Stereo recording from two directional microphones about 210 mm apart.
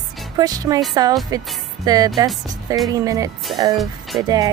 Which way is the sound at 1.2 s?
15° right (ahead or behind).